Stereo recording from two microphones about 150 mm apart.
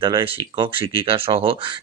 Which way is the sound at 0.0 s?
30° right (ahead or behind).